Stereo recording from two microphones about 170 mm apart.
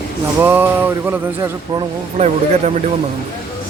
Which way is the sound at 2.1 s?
40° right (ahead or behind).